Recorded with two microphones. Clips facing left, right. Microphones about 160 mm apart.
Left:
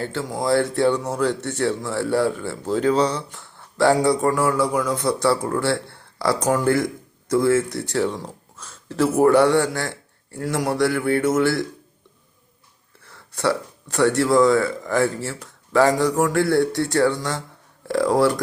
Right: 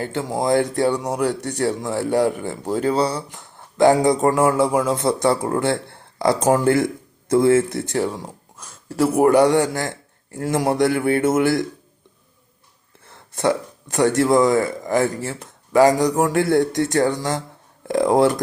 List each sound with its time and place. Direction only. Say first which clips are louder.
0.0 s speech: right 2 dB; 20° right (ahead or behind)
13.1 s speech: right 2 dB; 20° right (ahead or behind)